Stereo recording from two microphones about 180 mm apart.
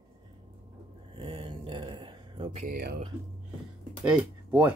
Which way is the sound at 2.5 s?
50° right (ahead or behind).